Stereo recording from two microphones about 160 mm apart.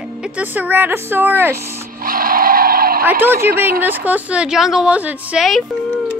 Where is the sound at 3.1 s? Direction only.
10° right (ahead or behind).